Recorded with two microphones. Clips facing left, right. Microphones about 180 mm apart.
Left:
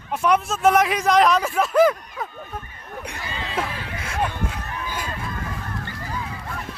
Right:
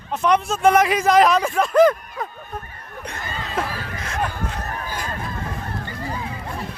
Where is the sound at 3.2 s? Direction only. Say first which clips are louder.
Right 2 dB; 45° right (ahead or behind).